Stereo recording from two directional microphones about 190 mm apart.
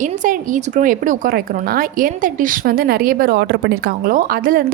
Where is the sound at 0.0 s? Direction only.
45° right (ahead or behind).